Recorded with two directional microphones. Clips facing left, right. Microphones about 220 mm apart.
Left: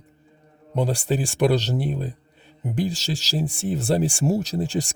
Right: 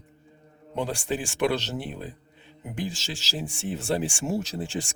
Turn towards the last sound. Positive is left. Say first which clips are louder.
# left 6 dB
turn(degrees=40)  # may be behind; listen again after turning